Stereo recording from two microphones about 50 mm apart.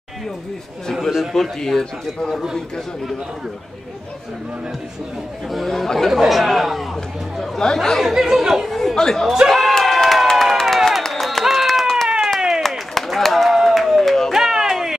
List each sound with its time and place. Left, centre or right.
1.3 s speech: centre
5.5 s speech: centre
8.0 s speech: centre
8.7 s speech: centre
9.3 s speech: centre
9.8 s crowd: centre
12.4 s a sound: centre
12.6 s a sound: centre
14.3 s a sound: centre